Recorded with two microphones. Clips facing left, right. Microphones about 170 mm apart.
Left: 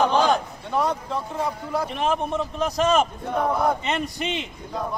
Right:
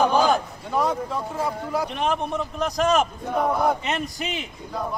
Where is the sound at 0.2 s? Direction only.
Centre (ahead or behind).